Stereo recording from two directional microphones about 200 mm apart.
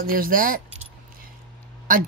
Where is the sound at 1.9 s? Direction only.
45° right (ahead or behind).